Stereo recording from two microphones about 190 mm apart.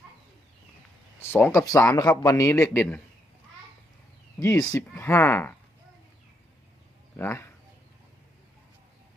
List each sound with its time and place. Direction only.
1.2 s a man's voice: 10° left (ahead or behind)
4.4 s a man's voice: 15° left (ahead or behind)
7.2 s a man's voice: 15° left (ahead or behind)